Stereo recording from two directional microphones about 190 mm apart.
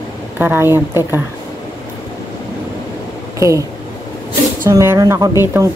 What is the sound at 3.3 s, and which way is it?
Speech, 15° right (ahead or behind).